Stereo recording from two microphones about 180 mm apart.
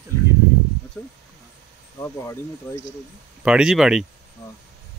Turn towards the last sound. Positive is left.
turn(degrees=-5)  # may be behind; listen again after turning